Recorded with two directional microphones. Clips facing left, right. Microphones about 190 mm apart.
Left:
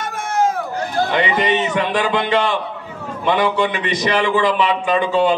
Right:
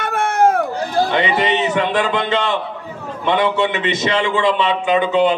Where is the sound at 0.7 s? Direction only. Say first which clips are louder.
Right 1 dB; 25° right (ahead or behind).